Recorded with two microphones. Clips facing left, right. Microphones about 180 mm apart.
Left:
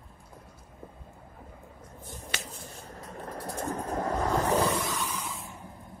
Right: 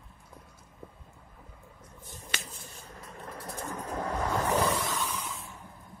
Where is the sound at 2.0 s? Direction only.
50° left (ahead or behind).